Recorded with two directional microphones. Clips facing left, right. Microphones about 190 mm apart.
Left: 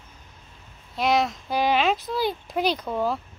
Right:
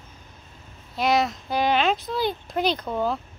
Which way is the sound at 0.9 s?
Centre (ahead or behind).